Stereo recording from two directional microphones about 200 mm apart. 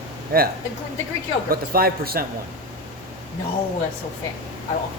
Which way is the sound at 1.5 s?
50° right (ahead or behind).